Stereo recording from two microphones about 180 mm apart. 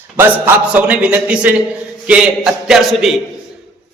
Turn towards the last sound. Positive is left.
turn(degrees=0)  # may be behind; listen again after turning